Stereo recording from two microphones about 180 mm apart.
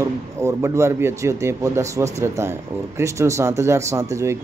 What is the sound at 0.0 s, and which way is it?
A man's voice, 15° right (ahead or behind).